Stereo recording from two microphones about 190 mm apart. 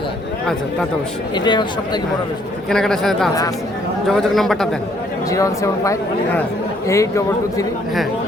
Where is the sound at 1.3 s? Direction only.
25° left (ahead or behind).